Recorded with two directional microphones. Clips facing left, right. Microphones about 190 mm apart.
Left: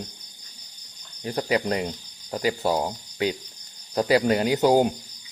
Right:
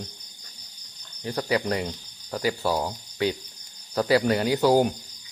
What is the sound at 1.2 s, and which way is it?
Speech, 20° left (ahead or behind).